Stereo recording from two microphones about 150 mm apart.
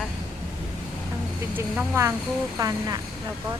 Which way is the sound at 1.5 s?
15° right (ahead or behind).